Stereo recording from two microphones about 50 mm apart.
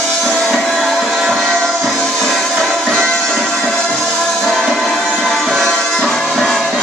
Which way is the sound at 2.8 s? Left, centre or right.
Centre.